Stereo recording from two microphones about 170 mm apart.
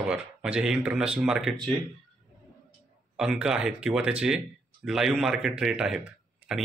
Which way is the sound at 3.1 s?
5° right (ahead or behind).